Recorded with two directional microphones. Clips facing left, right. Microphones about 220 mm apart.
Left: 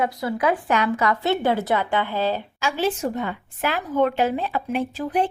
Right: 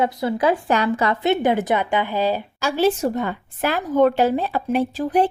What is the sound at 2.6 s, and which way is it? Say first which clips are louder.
Speech: right 5 dB; 40° right (ahead or behind).